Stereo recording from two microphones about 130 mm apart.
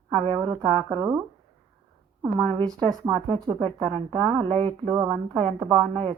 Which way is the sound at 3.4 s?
45° right (ahead or behind).